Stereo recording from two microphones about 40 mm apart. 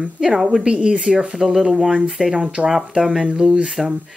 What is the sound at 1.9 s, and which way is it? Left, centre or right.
Speech, right.